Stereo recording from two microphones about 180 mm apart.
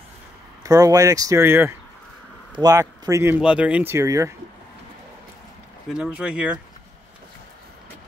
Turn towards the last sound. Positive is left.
turn(degrees=-5)  # may be behind; listen again after turning